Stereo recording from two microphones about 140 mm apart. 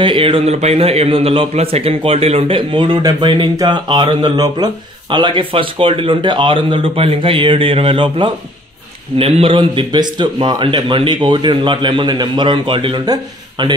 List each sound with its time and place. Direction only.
0.0 s a man's voice: 40° right (ahead or behind)